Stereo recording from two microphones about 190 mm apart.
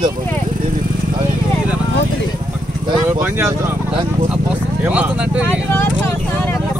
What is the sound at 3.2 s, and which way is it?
Speech, 15° right (ahead or behind).